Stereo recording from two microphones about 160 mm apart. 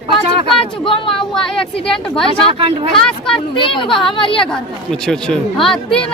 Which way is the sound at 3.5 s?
30° left (ahead or behind).